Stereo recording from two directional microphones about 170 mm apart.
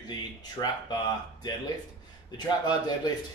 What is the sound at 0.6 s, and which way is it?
Speech, 25° left (ahead or behind).